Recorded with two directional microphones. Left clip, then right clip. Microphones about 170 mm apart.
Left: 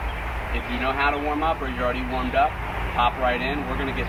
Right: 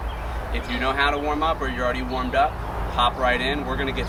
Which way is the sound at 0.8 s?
20° right (ahead or behind).